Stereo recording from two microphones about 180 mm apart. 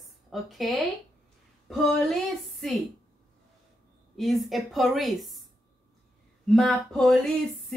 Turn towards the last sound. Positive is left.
turn(degrees=0)  # may be behind; listen again after turning